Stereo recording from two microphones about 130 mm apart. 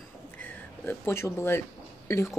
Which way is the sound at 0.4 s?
15° left (ahead or behind).